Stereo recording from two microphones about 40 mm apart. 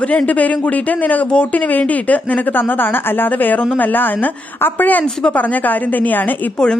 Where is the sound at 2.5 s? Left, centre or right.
Left.